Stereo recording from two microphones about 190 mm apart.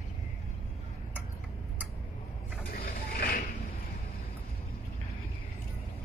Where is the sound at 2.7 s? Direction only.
50° left (ahead or behind).